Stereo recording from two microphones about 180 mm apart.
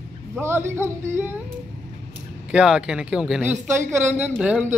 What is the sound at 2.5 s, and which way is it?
Speech, 5° right (ahead or behind).